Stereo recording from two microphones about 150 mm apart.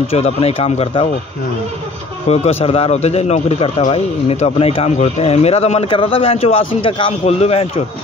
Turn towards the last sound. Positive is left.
turn(degrees=40)  # may be behind; listen again after turning